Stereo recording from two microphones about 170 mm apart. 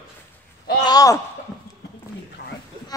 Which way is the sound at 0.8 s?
20° left (ahead or behind).